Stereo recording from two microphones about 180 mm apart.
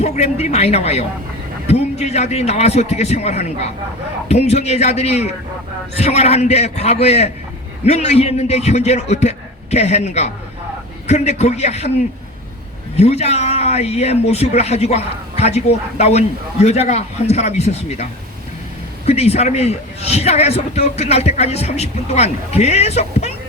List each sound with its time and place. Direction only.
0.0 s a man's voice: 35° left (ahead or behind)
13.0 s a man's voice: 35° left (ahead or behind)
19.0 s a man's voice: 35° left (ahead or behind)